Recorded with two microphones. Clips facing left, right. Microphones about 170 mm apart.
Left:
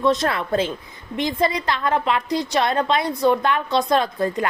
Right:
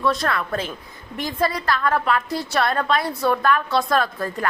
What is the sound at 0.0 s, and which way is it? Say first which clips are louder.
A woman's voice: left 2 dB; 20° left (ahead or behind).